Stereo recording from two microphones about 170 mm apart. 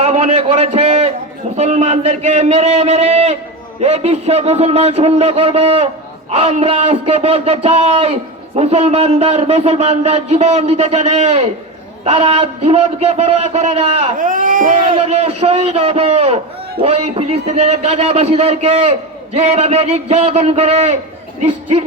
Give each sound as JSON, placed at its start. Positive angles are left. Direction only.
{"t": 0.0, "sound": "a sound", "side_deg": -40}
{"t": 1.5, "sound": "a man's voice", "side_deg": -40}
{"t": 14.2, "sound": "speech", "side_deg": -50}
{"t": 14.9, "sound": "a man's voice", "side_deg": -40}